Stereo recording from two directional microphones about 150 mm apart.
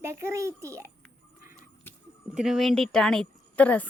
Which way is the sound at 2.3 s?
5° right (ahead or behind).